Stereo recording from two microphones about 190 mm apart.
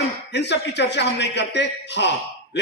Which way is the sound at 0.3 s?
65° left (ahead or behind).